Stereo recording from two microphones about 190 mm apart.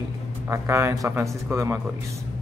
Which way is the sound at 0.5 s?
15° right (ahead or behind).